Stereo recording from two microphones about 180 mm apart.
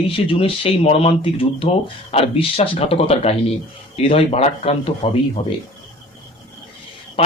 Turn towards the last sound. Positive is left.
turn(degrees=30)  # may be behind; listen again after turning